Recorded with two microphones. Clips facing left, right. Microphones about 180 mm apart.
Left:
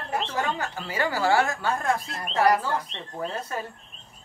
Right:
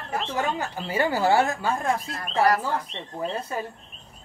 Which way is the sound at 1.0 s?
20° right (ahead or behind).